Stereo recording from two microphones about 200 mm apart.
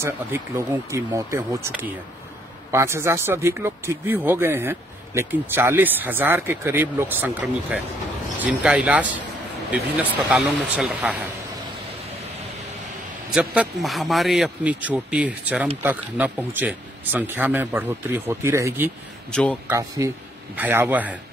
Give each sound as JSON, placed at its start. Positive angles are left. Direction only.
{"t": 0.0, "sound": "speech", "side_deg": -15}
{"t": 13.3, "sound": "a man's voice", "side_deg": -5}
{"t": 20.0, "sound": "speech", "side_deg": -15}